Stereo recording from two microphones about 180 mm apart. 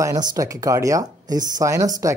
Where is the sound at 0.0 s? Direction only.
20° right (ahead or behind).